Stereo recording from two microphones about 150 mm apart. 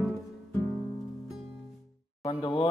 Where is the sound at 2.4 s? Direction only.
40° left (ahead or behind).